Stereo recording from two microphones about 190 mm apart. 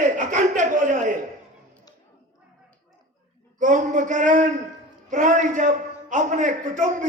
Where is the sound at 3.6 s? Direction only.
40° right (ahead or behind).